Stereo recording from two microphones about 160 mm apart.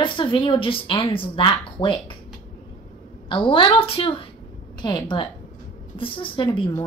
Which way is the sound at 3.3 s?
30° left (ahead or behind).